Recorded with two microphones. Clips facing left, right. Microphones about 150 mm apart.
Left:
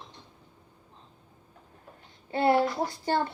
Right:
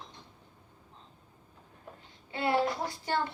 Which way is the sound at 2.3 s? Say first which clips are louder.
Left 8 dB; 40° left (ahead or behind).